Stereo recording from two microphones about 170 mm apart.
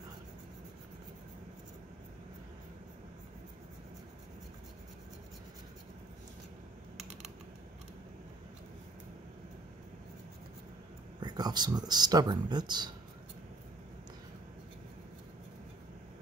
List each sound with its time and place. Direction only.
11.1 s speech: 25° right (ahead or behind)